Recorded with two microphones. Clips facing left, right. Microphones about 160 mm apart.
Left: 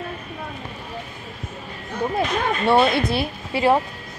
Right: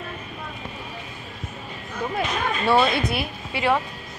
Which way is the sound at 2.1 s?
25° left (ahead or behind).